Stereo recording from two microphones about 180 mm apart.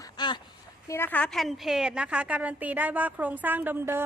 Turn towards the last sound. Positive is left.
turn(degrees=-15)  # may be behind; listen again after turning